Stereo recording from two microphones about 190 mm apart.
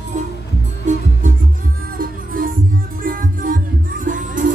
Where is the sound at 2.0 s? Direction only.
50° right (ahead or behind).